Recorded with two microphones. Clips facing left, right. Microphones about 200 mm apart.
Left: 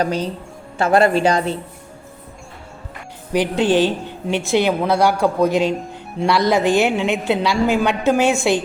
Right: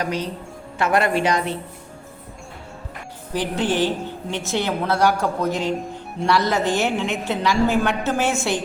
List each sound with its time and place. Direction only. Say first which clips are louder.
0.0 s a woman's voice: left 4 dB; 30° left (ahead or behind)
3.3 s a woman's voice: left 6 dB; 15° left (ahead or behind)